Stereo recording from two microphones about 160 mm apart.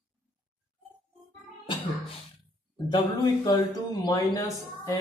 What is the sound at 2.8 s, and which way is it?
A woman's voice, 25° left (ahead or behind).